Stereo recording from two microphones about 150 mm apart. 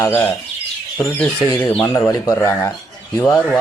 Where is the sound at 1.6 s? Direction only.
15° left (ahead or behind).